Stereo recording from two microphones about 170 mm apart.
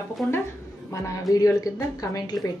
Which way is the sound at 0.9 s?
20° left (ahead or behind).